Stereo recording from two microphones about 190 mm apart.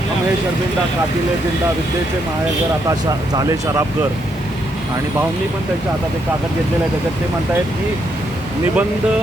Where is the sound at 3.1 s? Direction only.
20° right (ahead or behind).